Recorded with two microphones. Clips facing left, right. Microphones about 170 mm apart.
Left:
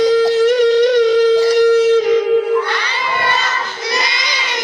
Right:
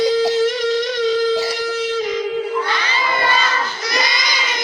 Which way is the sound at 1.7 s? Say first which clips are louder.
Left 9 dB; 80° left.